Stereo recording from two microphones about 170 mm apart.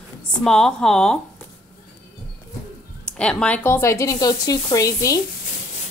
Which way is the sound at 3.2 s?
5° left (ahead or behind).